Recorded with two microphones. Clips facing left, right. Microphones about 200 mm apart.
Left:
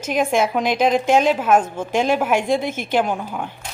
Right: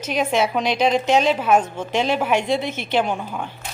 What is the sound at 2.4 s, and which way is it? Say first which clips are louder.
Speech: left 2 dB; 50° left (ahead or behind).